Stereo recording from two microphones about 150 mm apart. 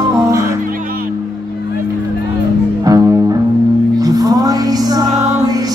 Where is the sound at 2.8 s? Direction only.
25° right (ahead or behind).